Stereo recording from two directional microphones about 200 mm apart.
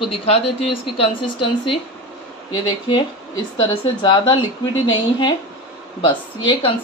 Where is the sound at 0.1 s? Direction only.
30° left (ahead or behind).